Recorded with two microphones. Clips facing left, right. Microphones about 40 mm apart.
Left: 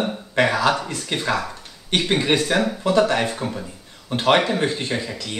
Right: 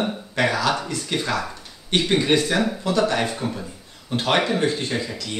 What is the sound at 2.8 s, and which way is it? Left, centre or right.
Speech, left.